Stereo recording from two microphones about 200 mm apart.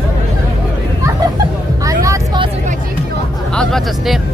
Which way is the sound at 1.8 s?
15° right (ahead or behind).